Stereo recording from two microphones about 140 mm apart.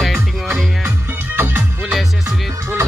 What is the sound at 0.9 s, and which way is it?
Music, 15° right (ahead or behind).